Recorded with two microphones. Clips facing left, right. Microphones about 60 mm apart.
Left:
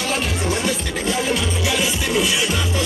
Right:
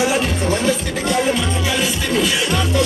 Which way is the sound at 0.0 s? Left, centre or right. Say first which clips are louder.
Right 5 dB; centre.